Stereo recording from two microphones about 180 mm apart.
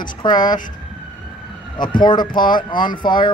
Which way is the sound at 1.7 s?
25° left (ahead or behind).